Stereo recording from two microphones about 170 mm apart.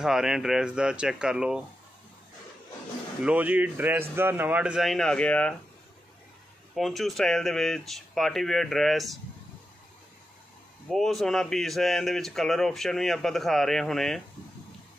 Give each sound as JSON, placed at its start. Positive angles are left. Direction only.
{"t": 0.0, "sound": "speech", "side_deg": -5}
{"t": 3.2, "sound": "speech", "side_deg": -10}
{"t": 6.7, "sound": "speech", "side_deg": 0}
{"t": 10.9, "sound": "speech", "side_deg": 0}